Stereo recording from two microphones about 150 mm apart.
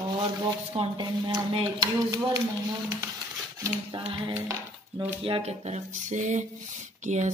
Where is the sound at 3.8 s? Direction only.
35° right (ahead or behind).